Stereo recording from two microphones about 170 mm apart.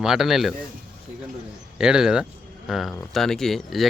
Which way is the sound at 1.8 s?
5° right (ahead or behind).